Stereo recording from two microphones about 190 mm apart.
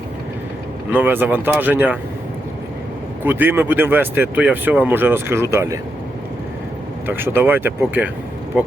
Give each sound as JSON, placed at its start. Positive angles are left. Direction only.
{"t": 0.9, "sound": "speech", "side_deg": -10}
{"t": 3.2, "sound": "speech", "side_deg": -10}
{"t": 7.1, "sound": "speech", "side_deg": -10}